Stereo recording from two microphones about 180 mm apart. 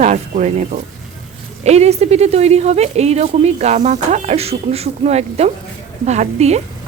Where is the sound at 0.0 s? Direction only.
40° right (ahead or behind).